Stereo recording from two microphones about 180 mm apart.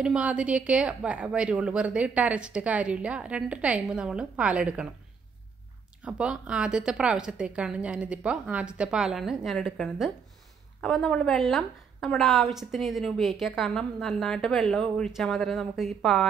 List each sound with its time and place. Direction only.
0.0 s a woman's voice: 5° right (ahead or behind)
6.0 s a woman's voice: 5° right (ahead or behind)